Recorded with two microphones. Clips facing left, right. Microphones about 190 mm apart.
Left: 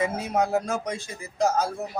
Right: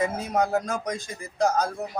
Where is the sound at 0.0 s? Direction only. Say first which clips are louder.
Even; 10° left (ahead or behind).